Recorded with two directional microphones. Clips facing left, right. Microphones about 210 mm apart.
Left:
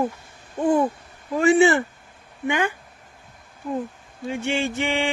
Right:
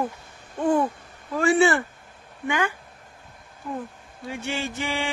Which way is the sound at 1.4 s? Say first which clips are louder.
Left 3 dB; 20° left (ahead or behind).